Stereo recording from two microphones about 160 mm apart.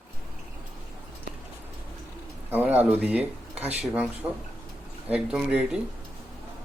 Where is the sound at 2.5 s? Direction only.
10° right (ahead or behind).